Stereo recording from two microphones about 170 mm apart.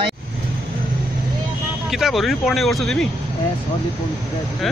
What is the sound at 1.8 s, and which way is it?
Speech, centre (ahead or behind).